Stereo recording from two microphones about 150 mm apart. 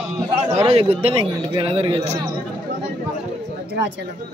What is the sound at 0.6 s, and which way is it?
Speech, 40° right (ahead or behind).